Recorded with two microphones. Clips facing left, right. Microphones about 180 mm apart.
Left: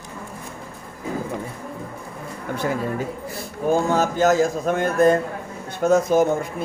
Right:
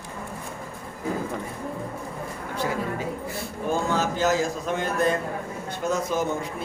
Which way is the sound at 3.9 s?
45° left (ahead or behind).